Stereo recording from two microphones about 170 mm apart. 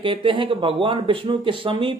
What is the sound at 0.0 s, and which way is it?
Speech, 30° right (ahead or behind).